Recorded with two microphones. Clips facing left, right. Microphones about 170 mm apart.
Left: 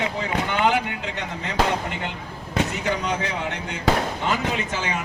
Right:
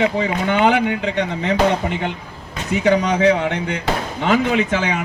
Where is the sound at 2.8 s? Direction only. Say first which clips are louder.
Right 11 dB; 65° right (ahead or behind).